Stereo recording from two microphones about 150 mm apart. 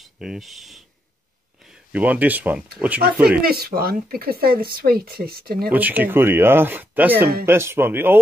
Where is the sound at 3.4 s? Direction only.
90° right.